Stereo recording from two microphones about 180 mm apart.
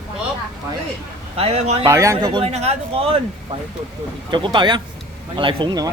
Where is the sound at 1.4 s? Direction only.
35° right (ahead or behind).